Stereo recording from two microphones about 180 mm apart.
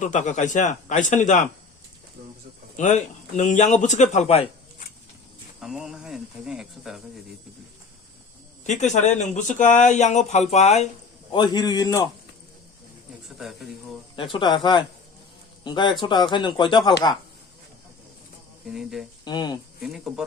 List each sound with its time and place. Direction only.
0.0 s a man's voice: 45° left (ahead or behind)
2.7 s speech: 40° left (ahead or behind)
5.5 s speech: centre (ahead or behind)
8.6 s speech: 40° left (ahead or behind)
11.3 s speech: 25° left (ahead or behind)
13.2 s speech: centre (ahead or behind)
14.2 s speech: 25° left (ahead or behind)
18.7 s speech: centre (ahead or behind)
19.2 s speech: 25° left (ahead or behind)
19.8 s speech: centre (ahead or behind)